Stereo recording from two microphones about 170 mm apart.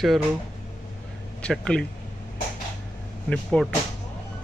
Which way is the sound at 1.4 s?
5° left (ahead or behind).